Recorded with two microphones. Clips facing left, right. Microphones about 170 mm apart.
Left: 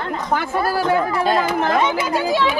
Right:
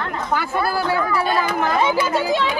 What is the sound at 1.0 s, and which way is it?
Speech, 25° left (ahead or behind).